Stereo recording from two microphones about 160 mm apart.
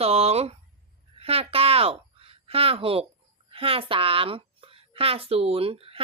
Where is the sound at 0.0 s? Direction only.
40° right (ahead or behind).